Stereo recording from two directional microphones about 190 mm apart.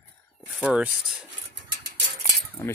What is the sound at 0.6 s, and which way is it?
Speech, 5° right (ahead or behind).